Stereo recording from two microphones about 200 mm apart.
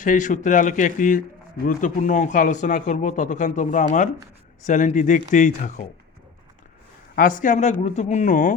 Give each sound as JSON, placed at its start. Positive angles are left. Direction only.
{"t": 0.0, "sound": "speech", "side_deg": 40}
{"t": 7.2, "sound": "speech", "side_deg": 40}